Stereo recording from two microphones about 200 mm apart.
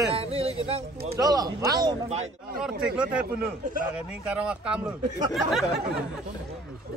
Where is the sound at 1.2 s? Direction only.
20° right (ahead or behind).